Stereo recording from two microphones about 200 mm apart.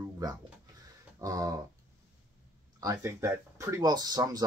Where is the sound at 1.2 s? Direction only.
15° right (ahead or behind).